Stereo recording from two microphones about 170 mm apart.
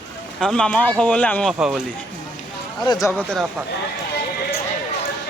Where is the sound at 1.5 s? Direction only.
5° right (ahead or behind).